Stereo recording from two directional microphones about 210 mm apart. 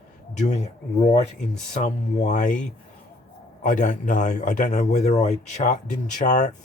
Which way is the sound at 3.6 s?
40° left (ahead or behind).